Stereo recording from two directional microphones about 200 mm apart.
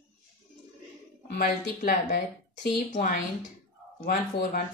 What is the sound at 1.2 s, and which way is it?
Speech, 55° left (ahead or behind).